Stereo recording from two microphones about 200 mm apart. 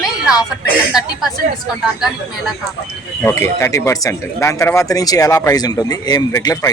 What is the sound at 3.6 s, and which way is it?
Speech, 15° left (ahead or behind).